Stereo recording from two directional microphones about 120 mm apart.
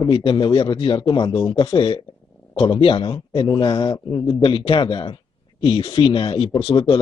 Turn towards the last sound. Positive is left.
turn(degrees=50)  # may be behind; listen again after turning